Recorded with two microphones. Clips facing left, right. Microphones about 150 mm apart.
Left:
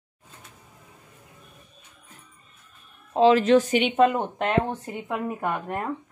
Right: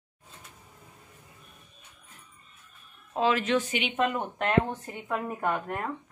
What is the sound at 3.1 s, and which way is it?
Speech, 30° left (ahead or behind).